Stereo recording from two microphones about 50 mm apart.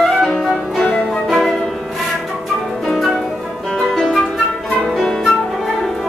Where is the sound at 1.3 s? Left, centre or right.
Centre.